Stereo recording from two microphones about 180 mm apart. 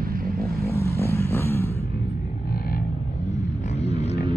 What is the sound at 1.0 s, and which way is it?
Vehicle, 15° left (ahead or behind).